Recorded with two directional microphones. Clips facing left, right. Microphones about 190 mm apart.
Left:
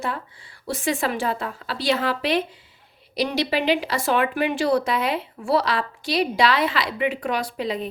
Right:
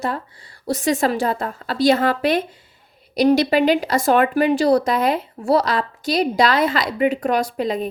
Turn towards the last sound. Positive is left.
turn(degrees=-45)  # may be behind; listen again after turning